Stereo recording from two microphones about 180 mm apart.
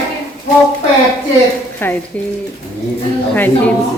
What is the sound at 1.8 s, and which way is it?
Speech, 10° left (ahead or behind).